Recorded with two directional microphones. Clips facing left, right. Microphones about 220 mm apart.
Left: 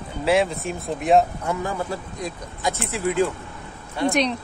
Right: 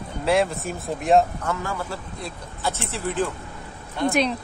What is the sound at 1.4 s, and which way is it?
Speech, 15° left (ahead or behind).